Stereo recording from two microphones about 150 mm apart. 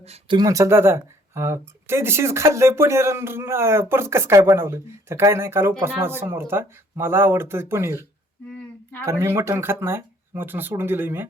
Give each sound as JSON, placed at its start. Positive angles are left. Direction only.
{"t": 0.0, "sound": "speech", "side_deg": -45}
{"t": 0.3, "sound": "speech", "side_deg": -20}
{"t": 9.0, "sound": "speech", "side_deg": -15}